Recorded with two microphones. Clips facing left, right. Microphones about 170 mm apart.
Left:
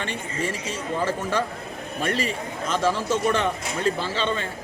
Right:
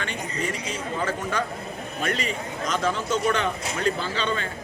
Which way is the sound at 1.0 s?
30° left (ahead or behind).